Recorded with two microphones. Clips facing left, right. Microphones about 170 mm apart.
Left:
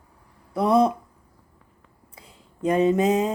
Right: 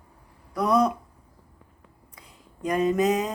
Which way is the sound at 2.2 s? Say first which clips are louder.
Left 5 dB; 25° left (ahead or behind).